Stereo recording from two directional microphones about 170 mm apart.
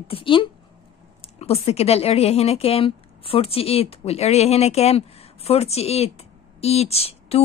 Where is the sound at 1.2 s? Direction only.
35° left (ahead or behind).